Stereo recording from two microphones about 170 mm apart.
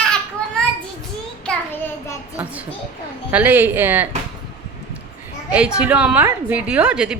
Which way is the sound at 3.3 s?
10° right (ahead or behind).